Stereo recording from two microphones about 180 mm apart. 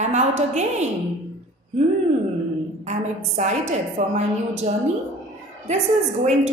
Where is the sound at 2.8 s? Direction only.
40° right (ahead or behind).